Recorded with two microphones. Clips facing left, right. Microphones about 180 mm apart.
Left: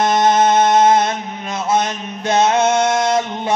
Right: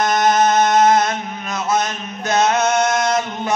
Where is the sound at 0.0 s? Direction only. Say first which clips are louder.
Left 2 dB; 25° left (ahead or behind).